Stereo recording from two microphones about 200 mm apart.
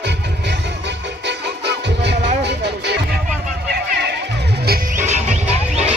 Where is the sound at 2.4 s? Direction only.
60° right (ahead or behind).